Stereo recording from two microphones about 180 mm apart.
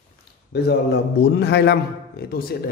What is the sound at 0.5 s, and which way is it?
Speech, 65° left (ahead or behind).